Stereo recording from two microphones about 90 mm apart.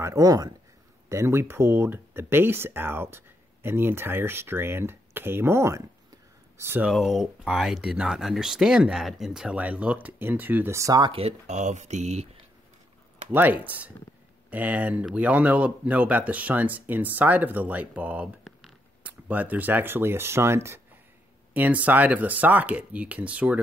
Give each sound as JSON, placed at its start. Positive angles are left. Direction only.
{"t": 0.0, "sound": "speech", "side_deg": -40}
{"t": 6.9, "sound": "speech", "side_deg": 0}
{"t": 9.6, "sound": "speech", "side_deg": -15}
{"t": 10.7, "sound": "speech", "side_deg": -35}
{"t": 11.2, "sound": "speech", "side_deg": -90}
{"t": 13.3, "sound": "speech", "side_deg": -20}
{"t": 21.5, "sound": "speech", "side_deg": -20}